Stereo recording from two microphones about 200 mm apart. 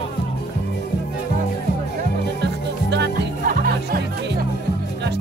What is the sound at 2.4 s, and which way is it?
Music, 60° right (ahead or behind).